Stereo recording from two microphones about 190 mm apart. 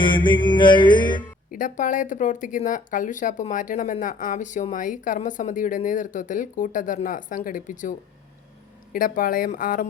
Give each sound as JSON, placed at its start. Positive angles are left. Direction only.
{"t": 0.0, "sound": "music", "side_deg": 25}
{"t": 1.5, "sound": "speech", "side_deg": 45}